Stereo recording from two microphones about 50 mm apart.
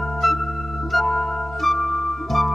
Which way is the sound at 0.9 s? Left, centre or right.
Centre.